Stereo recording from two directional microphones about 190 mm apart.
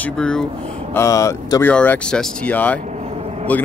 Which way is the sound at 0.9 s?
15° left (ahead or behind).